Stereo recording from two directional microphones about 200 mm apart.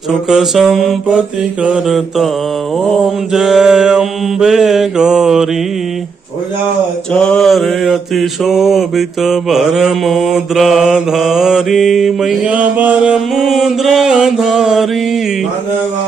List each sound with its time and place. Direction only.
0.3 s mantra: centre (ahead or behind)
3.3 s mantra: centre (ahead or behind)
7.1 s mantra: 5° left (ahead or behind)